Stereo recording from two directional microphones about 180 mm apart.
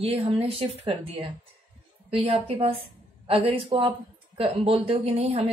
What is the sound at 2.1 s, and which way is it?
A woman's voice, 35° right (ahead or behind).